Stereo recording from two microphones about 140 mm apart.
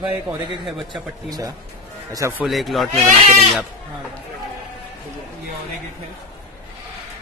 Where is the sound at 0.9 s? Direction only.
30° right (ahead or behind).